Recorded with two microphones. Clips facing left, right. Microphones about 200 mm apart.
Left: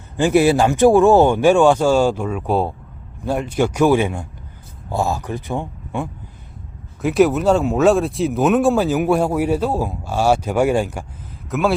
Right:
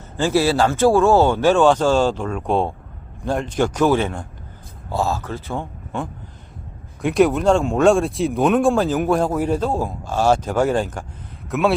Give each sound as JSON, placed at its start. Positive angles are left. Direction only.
{"t": 0.2, "sound": "speech", "side_deg": 15}